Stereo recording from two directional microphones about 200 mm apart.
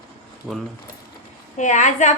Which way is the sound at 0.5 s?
5° right (ahead or behind).